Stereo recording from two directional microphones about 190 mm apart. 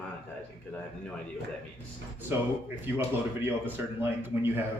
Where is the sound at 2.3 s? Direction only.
10° right (ahead or behind).